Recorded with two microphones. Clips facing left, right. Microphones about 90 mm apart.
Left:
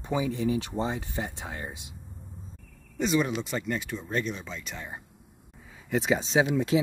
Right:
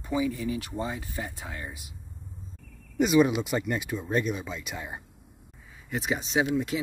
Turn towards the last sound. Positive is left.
turn(degrees=30)  # may be behind; listen again after turning